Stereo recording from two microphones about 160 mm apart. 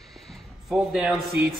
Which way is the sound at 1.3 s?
75° right (ahead or behind).